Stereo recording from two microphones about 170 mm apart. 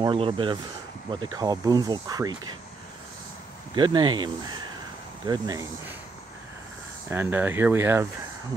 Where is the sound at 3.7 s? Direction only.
25° right (ahead or behind).